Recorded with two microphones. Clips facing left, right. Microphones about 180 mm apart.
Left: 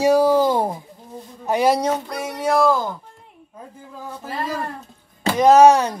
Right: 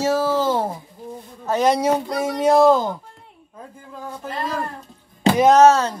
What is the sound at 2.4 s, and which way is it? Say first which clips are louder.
Speech: right 4 dB; 20° right (ahead or behind).